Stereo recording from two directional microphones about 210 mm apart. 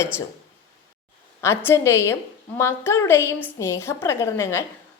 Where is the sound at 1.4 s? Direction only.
10° left (ahead or behind).